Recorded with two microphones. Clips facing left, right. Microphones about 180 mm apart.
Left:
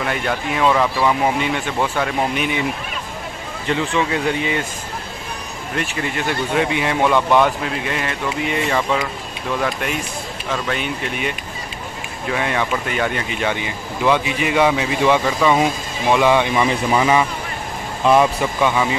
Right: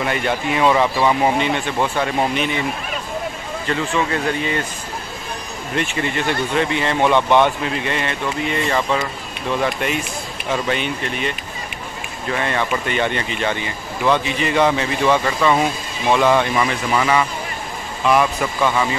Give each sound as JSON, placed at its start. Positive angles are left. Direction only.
{"t": 0.0, "sound": "speech", "side_deg": 0}
{"t": 3.6, "sound": "speech", "side_deg": 15}
{"t": 5.8, "sound": "speech", "side_deg": 5}
{"t": 12.3, "sound": "speech", "side_deg": 5}
{"t": 18.0, "sound": "speech", "side_deg": 30}
{"t": 18.6, "sound": "speech", "side_deg": 15}